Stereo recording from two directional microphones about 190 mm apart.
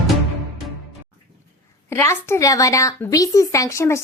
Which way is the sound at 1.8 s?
15° left (ahead or behind).